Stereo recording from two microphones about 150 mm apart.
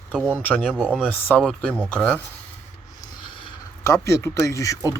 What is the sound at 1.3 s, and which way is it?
Speech, 5° left (ahead or behind).